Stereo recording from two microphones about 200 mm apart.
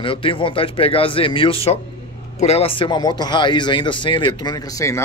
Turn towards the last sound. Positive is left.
turn(degrees=15)  # may be behind; listen again after turning